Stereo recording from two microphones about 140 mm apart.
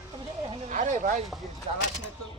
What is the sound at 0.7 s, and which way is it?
Speech, 65° right (ahead or behind).